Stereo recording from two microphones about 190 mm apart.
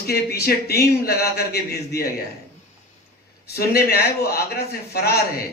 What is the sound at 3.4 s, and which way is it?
A man's voice, 55° left (ahead or behind).